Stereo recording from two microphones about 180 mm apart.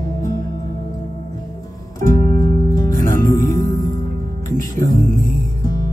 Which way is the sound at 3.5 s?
50° right (ahead or behind).